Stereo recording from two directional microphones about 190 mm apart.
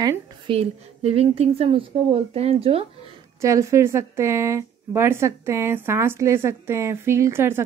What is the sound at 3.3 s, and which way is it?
A woman's voice, 15° right (ahead or behind).